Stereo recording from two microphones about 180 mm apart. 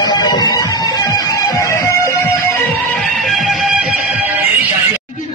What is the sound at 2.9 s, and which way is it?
Music, centre (ahead or behind).